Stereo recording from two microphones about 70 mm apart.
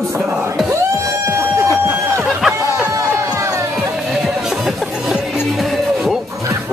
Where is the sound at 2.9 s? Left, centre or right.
Right.